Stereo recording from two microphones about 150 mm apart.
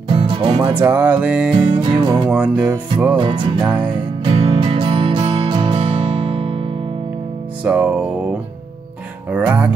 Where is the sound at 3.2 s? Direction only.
35° right (ahead or behind).